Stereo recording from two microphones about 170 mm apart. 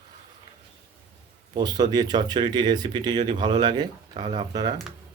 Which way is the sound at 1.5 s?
25° right (ahead or behind).